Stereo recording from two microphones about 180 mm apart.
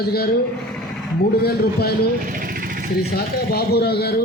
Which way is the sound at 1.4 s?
60° left (ahead or behind).